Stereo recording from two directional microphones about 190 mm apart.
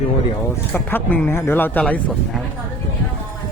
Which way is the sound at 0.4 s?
10° left (ahead or behind).